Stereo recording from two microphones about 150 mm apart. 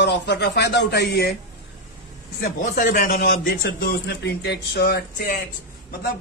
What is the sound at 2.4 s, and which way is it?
Speech, 70° left (ahead or behind).